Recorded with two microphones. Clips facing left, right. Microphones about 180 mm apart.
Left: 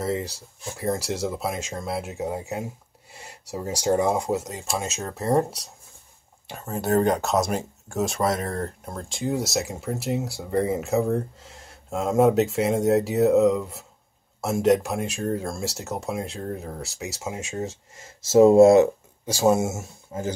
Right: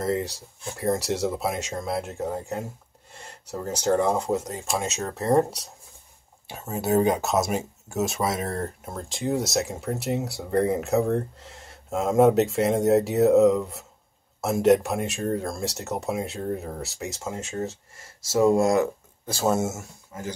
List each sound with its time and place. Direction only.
0.0 s speech: centre (ahead or behind); by 18.9 s 25° left (ahead or behind)
19.3 s speech: 15° left (ahead or behind)
20.1 s speech: 30° left (ahead or behind)